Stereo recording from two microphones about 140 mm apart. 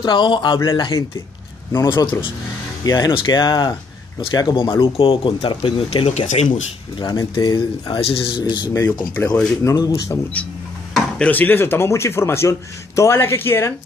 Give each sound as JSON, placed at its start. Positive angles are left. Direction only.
{"t": 0.0, "sound": "speech", "side_deg": 35}
{"t": 7.0, "sound": "speech", "side_deg": 30}
{"t": 9.1, "sound": "speech", "side_deg": 10}
{"t": 9.6, "sound": "speech", "side_deg": 25}
{"t": 10.4, "sound": "speech", "side_deg": 10}